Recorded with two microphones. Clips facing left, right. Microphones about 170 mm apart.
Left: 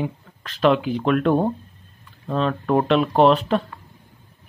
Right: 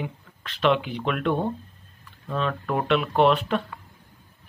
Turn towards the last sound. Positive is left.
turn(degrees=35)  # may be behind; listen again after turning